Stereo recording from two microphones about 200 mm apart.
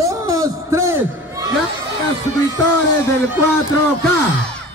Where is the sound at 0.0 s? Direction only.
15° right (ahead or behind).